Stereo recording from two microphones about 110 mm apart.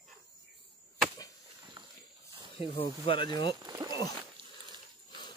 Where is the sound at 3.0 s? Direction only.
45° left (ahead or behind).